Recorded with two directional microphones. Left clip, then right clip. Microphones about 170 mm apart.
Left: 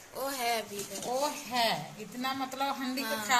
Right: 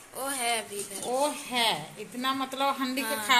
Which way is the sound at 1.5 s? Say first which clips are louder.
Right 2 dB; 35° right (ahead or behind).